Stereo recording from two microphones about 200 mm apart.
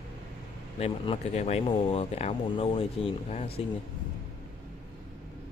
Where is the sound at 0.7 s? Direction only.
30° left (ahead or behind).